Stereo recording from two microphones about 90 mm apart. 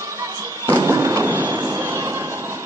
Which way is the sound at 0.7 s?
30° right (ahead or behind).